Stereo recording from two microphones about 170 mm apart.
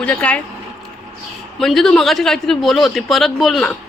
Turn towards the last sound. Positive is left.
turn(degrees=0)  # may be behind; listen again after turning